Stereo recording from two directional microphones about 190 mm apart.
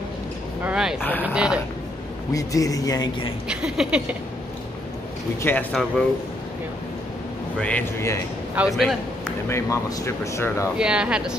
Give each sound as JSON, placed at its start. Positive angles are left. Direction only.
{"t": 0.7, "sound": "vehicle", "side_deg": -5}
{"t": 1.2, "sound": "a sound", "side_deg": -5}
{"t": 2.3, "sound": "a man's voice", "side_deg": 15}
{"t": 3.4, "sound": "speech", "side_deg": -5}
{"t": 5.4, "sound": "speech", "side_deg": 10}
{"t": 7.5, "sound": "speech", "side_deg": 5}
{"t": 8.6, "sound": "a man's voice", "side_deg": -10}
{"t": 9.5, "sound": "speech", "side_deg": 15}
{"t": 10.8, "sound": "speech", "side_deg": -5}